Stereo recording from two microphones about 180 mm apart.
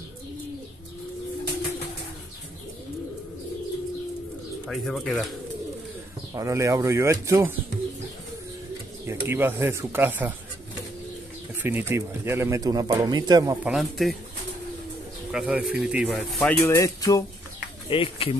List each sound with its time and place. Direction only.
4.6 s speech: centre (ahead or behind)
6.3 s speech: 15° right (ahead or behind)
9.0 s speech: 15° right (ahead or behind)
11.5 s speech: 10° right (ahead or behind)
13.7 s speech: centre (ahead or behind)
15.3 s speech: 5° right (ahead or behind); by 17.2 s 20° left (ahead or behind)
17.8 s speech: 30° left (ahead or behind)